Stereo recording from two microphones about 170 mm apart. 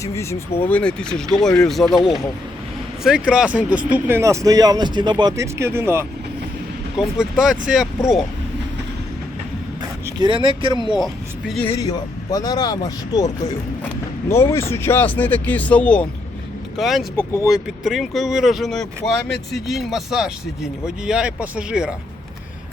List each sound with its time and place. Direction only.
0.0 s speech: 15° left (ahead or behind); by 6.1 s 15° right (ahead or behind)
6.9 s speech: 5° right (ahead or behind)
10.2 s speech: 30° right (ahead or behind)
10.9 s speech: centre (ahead or behind)
11.8 s speech: 20° left (ahead or behind); by 17.1 s centre (ahead or behind)
17.2 s speech: 15° left (ahead or behind)
17.5 s speech: centre (ahead or behind)